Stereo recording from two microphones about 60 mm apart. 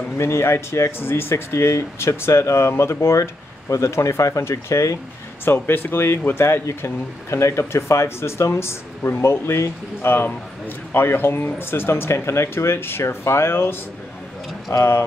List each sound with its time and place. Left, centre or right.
0.2 s speech: left
5.4 s speech: left